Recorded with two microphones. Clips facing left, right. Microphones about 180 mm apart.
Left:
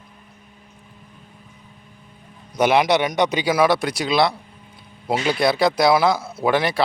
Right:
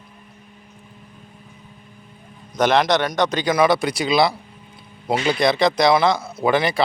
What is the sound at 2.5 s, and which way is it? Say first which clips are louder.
A man's voice: even; 10° left (ahead or behind).